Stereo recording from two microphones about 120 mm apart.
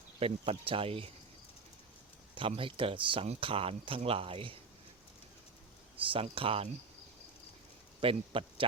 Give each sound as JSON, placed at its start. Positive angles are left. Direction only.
{"t": 0.2, "sound": "speech", "side_deg": -50}
{"t": 2.6, "sound": "speech", "side_deg": -45}
{"t": 6.1, "sound": "speech", "side_deg": -50}
{"t": 8.0, "sound": "speech", "side_deg": -50}